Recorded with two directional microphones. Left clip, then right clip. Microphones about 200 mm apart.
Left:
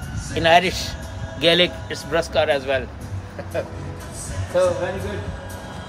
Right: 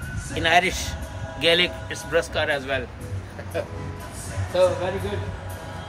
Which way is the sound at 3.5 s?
10° left (ahead or behind).